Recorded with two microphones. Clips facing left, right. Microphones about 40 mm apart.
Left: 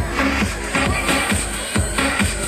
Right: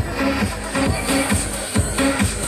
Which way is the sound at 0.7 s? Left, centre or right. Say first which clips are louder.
Left 1 dB; left.